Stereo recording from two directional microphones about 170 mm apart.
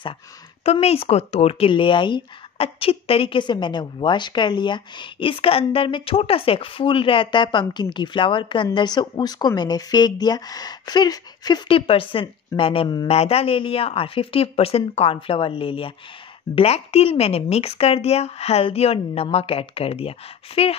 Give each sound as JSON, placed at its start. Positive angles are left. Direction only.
{"t": 0.7, "sound": "speech", "side_deg": 35}